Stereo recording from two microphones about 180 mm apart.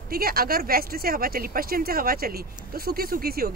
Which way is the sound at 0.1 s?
55° right (ahead or behind).